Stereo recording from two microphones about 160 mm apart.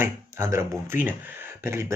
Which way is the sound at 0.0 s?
20° right (ahead or behind).